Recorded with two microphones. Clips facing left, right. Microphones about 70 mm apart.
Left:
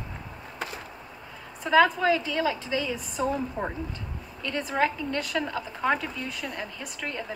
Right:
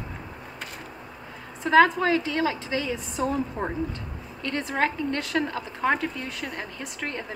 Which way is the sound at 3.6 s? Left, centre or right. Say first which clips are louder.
Right 1 dB; right.